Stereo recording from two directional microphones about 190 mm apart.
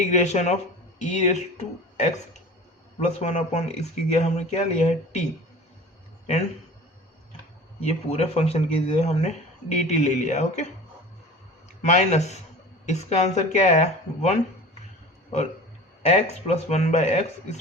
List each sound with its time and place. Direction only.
0.1 s speech: 35° left (ahead or behind)
3.0 s speech: 35° left (ahead or behind)
7.8 s speech: 30° left (ahead or behind)
11.8 s speech: 35° left (ahead or behind)
16.0 s speech: 35° left (ahead or behind)